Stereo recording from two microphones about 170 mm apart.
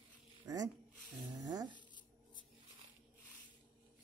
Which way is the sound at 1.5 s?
20° right (ahead or behind).